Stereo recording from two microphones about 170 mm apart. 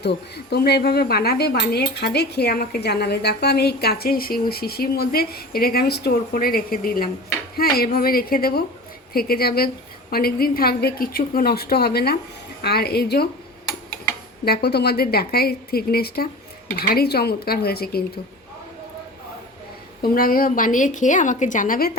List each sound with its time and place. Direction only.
0.0 s a woman's voice: 75° left (ahead or behind)
14.4 s a woman's voice: 70° left (ahead or behind)
20.0 s a woman's voice: 55° left (ahead or behind)